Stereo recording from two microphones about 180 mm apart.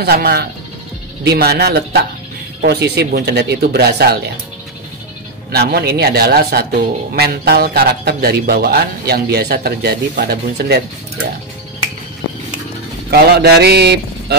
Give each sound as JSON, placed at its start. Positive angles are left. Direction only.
{"t": 0.0, "sound": "a man's voice", "side_deg": -60}
{"t": 5.5, "sound": "a man's voice", "side_deg": -60}
{"t": 13.1, "sound": "a man's voice", "side_deg": -65}